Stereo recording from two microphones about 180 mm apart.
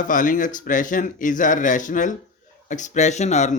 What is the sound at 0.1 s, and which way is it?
Speech, 45° left (ahead or behind).